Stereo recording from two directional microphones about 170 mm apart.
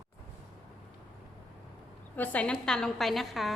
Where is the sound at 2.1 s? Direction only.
10° left (ahead or behind).